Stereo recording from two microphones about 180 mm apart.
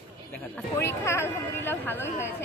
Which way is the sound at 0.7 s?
15° left (ahead or behind).